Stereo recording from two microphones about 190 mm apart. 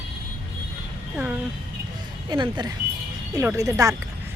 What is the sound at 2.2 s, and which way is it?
A woman's voice, 25° right (ahead or behind).